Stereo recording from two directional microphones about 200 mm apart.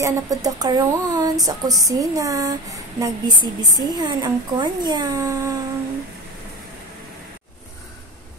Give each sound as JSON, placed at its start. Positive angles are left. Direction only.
{"t": 0.0, "sound": "speech", "side_deg": -15}